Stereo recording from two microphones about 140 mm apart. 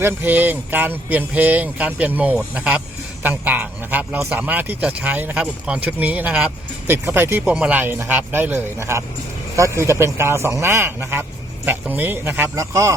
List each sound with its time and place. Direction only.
0.0 s a man's voice: 15° right (ahead or behind)